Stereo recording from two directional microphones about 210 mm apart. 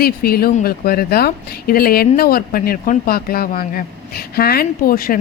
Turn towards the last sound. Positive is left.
turn(degrees=45)  # may be behind; listen again after turning